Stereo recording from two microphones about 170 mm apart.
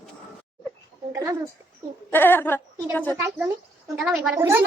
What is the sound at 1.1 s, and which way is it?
Speech, 15° right (ahead or behind).